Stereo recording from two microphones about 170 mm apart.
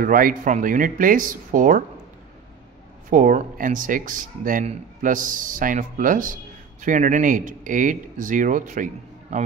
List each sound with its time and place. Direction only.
0.0 s speech: 55° right (ahead or behind)
3.1 s speech: 50° right (ahead or behind)